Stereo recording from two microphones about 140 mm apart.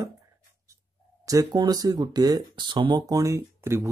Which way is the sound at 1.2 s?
25° right (ahead or behind).